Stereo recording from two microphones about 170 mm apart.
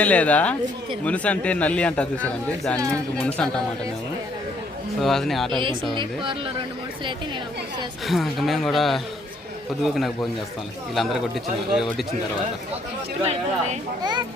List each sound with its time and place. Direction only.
0.0 s a man's voice: 10° left (ahead or behind)
4.9 s a man's voice: centre (ahead or behind)
5.9 s speech: 30° right (ahead or behind)
8.0 s a man's voice: centre (ahead or behind)
14.0 s speech: 25° right (ahead or behind)